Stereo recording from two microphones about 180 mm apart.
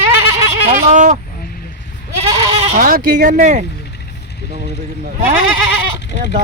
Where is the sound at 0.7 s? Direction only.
45° right (ahead or behind).